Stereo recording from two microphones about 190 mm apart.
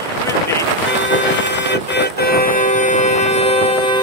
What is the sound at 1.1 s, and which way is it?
Music, 65° left (ahead or behind).